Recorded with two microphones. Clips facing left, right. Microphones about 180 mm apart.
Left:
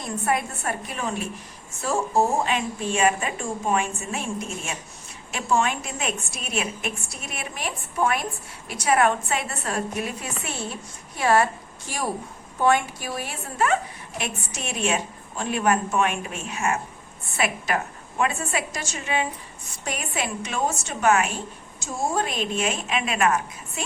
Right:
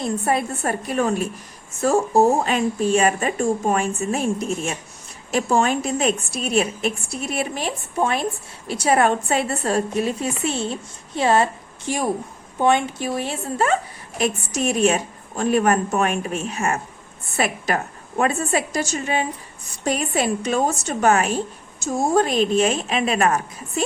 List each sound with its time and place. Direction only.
0.0 s a woman's voice: 30° right (ahead or behind)
14.2 s a woman's voice: 40° right (ahead or behind)